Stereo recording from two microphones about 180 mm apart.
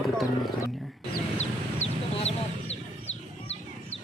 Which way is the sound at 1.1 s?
40° left (ahead or behind).